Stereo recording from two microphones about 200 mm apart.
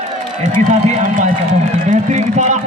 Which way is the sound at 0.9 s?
35° right (ahead or behind).